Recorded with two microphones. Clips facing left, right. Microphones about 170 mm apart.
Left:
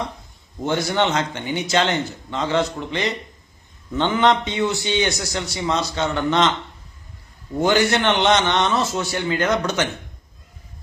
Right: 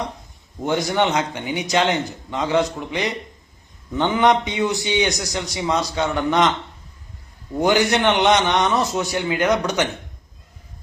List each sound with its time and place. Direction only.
0.6 s a man's voice: 15° right (ahead or behind)
7.6 s a man's voice: 15° right (ahead or behind)